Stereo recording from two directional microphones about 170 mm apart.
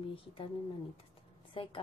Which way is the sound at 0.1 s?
30° left (ahead or behind).